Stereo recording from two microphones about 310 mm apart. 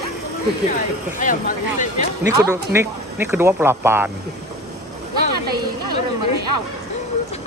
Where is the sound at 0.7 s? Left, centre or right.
Left.